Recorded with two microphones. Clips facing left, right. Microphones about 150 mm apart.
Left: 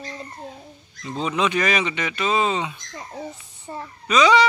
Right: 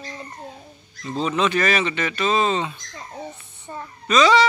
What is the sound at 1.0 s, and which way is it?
Speech, 15° left (ahead or behind).